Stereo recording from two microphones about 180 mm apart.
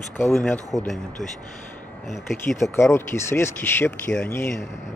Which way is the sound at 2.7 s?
15° left (ahead or behind).